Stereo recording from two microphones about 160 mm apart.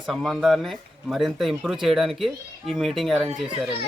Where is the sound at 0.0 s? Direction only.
Centre (ahead or behind).